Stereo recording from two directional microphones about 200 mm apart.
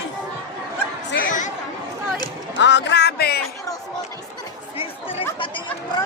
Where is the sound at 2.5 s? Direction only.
65° left (ahead or behind).